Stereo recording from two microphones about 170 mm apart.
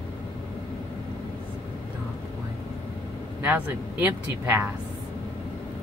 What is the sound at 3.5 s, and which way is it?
Speech, 10° right (ahead or behind).